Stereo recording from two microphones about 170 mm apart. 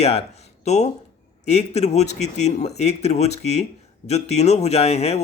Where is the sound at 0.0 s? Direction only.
40° left (ahead or behind).